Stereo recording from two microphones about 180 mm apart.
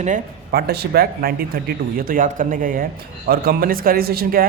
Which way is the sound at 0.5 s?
60° right (ahead or behind).